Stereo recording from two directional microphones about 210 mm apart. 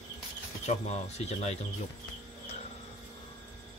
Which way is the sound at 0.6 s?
30° left (ahead or behind).